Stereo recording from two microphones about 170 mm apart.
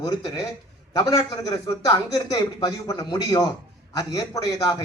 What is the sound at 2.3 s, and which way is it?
A man's voice, 20° left (ahead or behind).